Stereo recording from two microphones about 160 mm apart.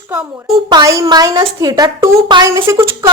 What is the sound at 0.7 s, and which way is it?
Speech, 20° right (ahead or behind).